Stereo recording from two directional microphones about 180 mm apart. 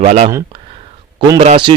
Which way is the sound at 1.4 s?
30° right (ahead or behind).